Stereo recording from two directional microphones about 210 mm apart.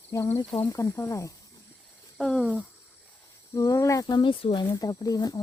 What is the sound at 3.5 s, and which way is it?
Speech, 15° left (ahead or behind).